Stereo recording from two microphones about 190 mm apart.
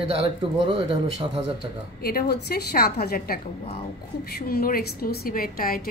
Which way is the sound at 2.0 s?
55° left (ahead or behind).